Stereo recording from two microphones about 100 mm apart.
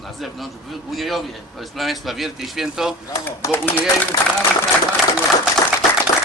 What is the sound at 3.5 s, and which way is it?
Speech, 20° left (ahead or behind).